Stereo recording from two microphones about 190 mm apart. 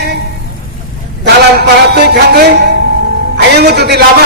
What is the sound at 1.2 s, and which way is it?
A man's voice, 60° right (ahead or behind).